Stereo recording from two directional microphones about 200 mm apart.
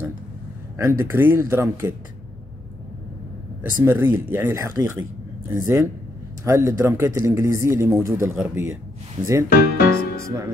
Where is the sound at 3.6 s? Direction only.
10° right (ahead or behind).